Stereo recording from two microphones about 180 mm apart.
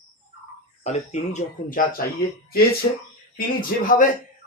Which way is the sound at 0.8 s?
40° left (ahead or behind).